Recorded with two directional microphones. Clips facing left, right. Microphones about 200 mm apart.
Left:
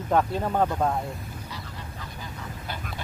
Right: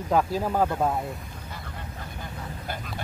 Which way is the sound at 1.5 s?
55° right (ahead or behind).